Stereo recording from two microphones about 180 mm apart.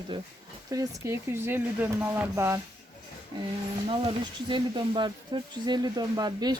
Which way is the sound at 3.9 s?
25° right (ahead or behind).